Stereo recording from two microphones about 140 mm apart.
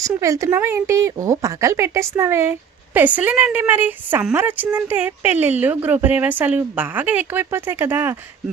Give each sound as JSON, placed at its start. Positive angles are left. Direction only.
{"t": 0.0, "sound": "speech", "side_deg": -25}